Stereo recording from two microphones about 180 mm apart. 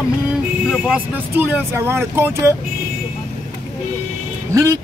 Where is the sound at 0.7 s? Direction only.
5° right (ahead or behind).